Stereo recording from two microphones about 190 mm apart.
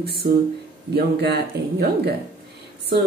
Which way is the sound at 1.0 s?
55° right (ahead or behind).